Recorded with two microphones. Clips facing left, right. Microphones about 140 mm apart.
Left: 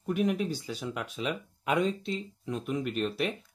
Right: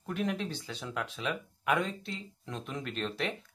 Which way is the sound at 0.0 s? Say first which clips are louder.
Left 5 dB; 15° left (ahead or behind).